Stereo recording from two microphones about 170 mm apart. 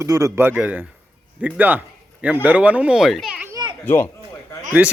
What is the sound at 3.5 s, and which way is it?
Children playing, 25° right (ahead or behind).